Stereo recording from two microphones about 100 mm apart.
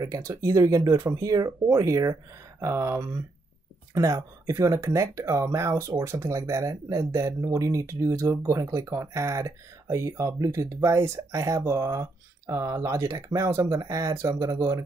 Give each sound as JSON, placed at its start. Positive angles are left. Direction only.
{"t": 0.0, "sound": "speech", "side_deg": -35}